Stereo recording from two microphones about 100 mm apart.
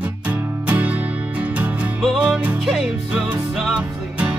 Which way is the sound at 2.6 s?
5° right (ahead or behind).